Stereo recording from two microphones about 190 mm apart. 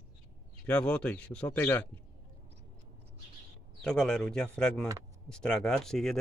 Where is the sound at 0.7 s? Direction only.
5° left (ahead or behind).